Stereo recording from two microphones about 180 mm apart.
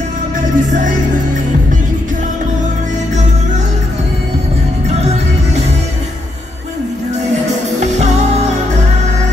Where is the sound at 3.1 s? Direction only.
40° right (ahead or behind).